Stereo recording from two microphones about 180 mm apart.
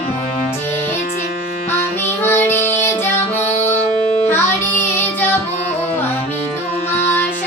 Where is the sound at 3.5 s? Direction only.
35° left (ahead or behind).